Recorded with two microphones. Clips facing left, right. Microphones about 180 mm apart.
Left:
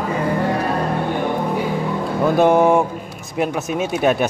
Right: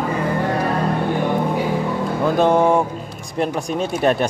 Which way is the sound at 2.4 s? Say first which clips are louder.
Left 2 dB; 10° left (ahead or behind).